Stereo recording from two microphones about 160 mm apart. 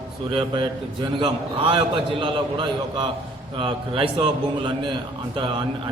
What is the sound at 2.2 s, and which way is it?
A man's voice, 30° right (ahead or behind).